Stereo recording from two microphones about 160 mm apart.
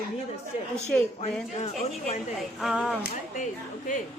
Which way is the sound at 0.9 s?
5° left (ahead or behind).